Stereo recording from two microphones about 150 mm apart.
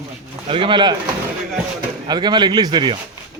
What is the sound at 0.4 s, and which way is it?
Speech, 35° right (ahead or behind).